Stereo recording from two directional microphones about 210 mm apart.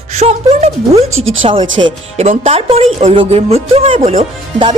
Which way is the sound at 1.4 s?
25° right (ahead or behind).